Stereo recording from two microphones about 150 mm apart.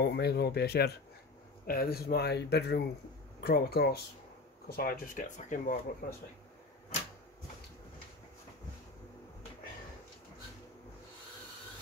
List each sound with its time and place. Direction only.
0.0 s speech: 90° left; by 6.1 s 65° left (ahead or behind)